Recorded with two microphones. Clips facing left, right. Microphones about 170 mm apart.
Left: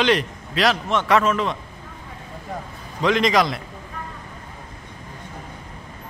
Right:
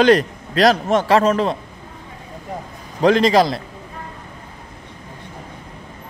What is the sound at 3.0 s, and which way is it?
Speech, 35° right (ahead or behind).